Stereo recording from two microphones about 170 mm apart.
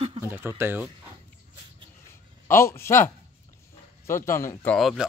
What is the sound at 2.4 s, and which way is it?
Speech, 15° left (ahead or behind).